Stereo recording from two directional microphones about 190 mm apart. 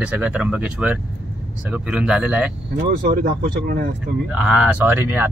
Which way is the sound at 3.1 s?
50° right (ahead or behind).